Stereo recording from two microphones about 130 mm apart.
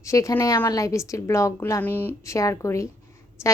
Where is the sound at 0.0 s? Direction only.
25° left (ahead or behind).